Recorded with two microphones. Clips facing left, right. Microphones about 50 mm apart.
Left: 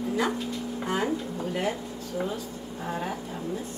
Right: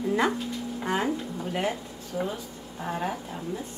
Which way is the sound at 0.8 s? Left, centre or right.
Right.